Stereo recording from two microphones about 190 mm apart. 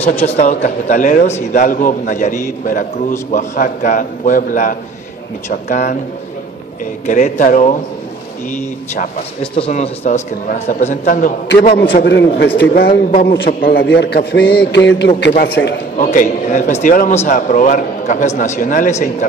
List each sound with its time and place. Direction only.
0.0 s a man's voice: 35° left (ahead or behind)
7.1 s a man's voice: 40° left (ahead or behind); by 13.5 s 65° left (ahead or behind)
13.5 s a man's voice: 45° left (ahead or behind)
13.7 s a man's voice: 65° left (ahead or behind)
16.0 s a man's voice: 40° left (ahead or behind)